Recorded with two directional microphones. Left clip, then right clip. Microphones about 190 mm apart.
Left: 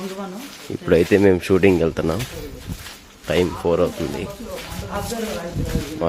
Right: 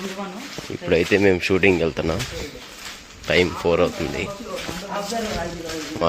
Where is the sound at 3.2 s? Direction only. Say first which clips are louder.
Right 1 dB; 20° left (ahead or behind).